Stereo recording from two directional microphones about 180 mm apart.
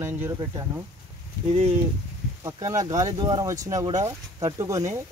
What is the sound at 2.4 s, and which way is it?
Speech, 20° right (ahead or behind).